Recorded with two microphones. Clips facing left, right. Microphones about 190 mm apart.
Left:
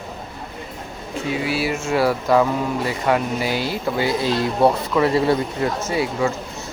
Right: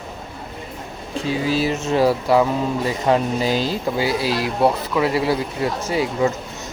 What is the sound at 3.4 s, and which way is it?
Speech, 15° left (ahead or behind).